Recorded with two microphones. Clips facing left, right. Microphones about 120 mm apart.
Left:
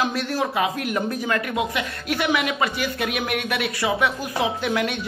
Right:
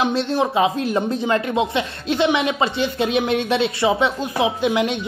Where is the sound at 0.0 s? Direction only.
25° right (ahead or behind).